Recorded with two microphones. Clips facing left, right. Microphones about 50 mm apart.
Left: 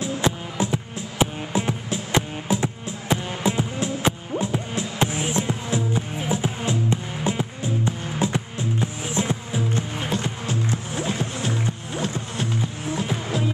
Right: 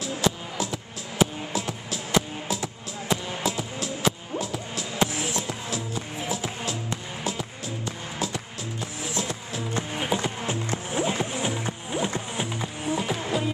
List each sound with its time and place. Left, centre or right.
0.0 s music: left
9.8 s music: centre
10.4 s music: right
12.4 s music: centre